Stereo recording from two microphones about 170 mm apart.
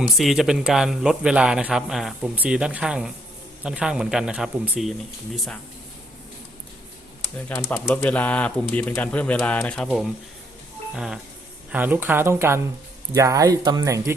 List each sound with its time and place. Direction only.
0.2 s a man's voice: centre (ahead or behind)
7.5 s speech: 10° left (ahead or behind)
10.9 s a man's voice: 5° right (ahead or behind); by 14.1 s 20° right (ahead or behind)